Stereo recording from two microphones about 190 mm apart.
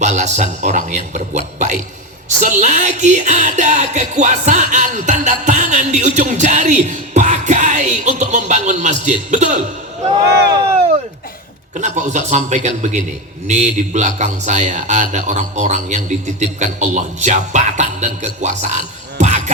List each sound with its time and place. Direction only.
0.0 s music: 35° right (ahead or behind)
10.3 s speech: 60° right (ahead or behind)
11.8 s music: 40° right (ahead or behind)